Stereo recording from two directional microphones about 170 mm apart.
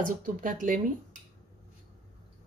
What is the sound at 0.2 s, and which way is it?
A woman's voice, 50° right (ahead or behind).